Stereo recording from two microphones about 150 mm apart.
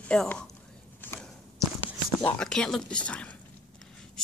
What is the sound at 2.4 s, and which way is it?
A woman's voice, 5° left (ahead or behind).